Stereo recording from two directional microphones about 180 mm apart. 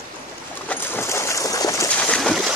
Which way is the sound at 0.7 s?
15° left (ahead or behind).